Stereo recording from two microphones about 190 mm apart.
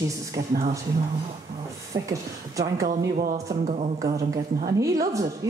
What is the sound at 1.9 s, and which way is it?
Speech, 15° right (ahead or behind).